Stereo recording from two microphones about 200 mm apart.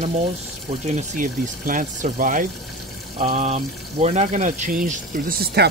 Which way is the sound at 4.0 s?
30° right (ahead or behind).